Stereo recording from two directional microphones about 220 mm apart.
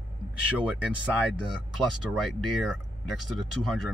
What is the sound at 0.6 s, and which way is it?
Speech, 5° right (ahead or behind).